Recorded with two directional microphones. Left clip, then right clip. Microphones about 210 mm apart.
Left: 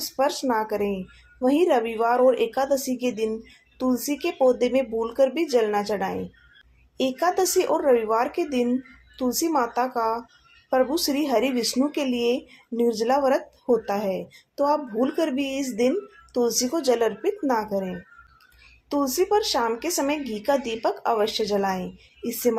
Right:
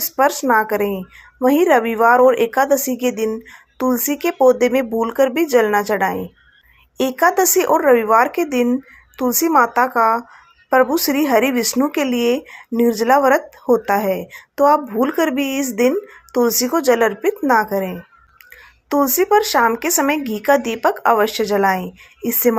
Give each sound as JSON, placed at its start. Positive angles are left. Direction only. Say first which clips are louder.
{"t": 0.2, "sound": "speech", "louder": "right 9 dB", "side_deg": -20}
{"t": 18.9, "sound": "speech", "louder": "right 7 dB", "side_deg": -20}